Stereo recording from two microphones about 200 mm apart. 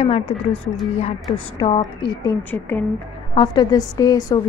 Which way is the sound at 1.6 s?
25° left (ahead or behind).